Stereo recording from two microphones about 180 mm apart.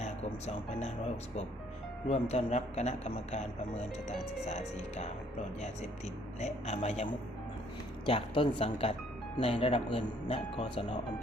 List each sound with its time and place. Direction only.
0.0 s speech: 40° left (ahead or behind)
4.4 s speech: 40° left (ahead or behind)
6.4 s speech: 40° left (ahead or behind)